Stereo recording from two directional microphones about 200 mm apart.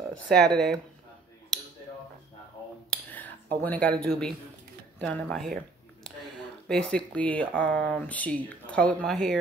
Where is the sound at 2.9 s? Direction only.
10° left (ahead or behind).